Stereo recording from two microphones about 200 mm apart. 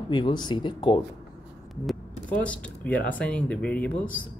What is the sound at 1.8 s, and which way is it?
Speech, 5° left (ahead or behind).